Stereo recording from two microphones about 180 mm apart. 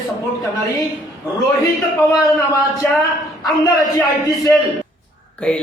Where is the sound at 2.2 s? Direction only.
20° left (ahead or behind).